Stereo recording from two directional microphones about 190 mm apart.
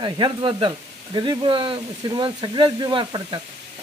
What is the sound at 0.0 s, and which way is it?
Speech, 25° right (ahead or behind).